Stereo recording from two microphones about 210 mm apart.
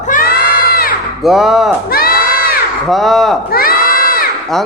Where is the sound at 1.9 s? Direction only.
45° left (ahead or behind).